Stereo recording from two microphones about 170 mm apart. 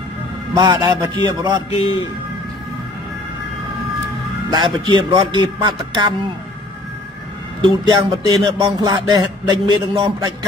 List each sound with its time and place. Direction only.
0.6 s speech: 20° right (ahead or behind)
1.7 s a man's voice: 35° left (ahead or behind)
4.5 s speech: 25° right (ahead or behind)
7.6 s speech: 25° right (ahead or behind)